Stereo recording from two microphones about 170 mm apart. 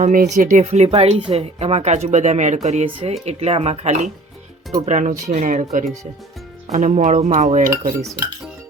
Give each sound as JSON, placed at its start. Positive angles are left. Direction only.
{"t": 0.0, "sound": "speech", "side_deg": -50}